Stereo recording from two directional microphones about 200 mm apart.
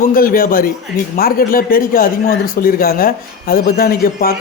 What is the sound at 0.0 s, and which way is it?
Speech, 45° left (ahead or behind).